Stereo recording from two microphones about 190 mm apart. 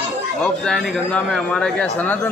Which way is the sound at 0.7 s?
5° left (ahead or behind).